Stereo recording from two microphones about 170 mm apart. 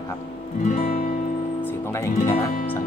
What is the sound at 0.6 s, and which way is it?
Music, 45° left (ahead or behind).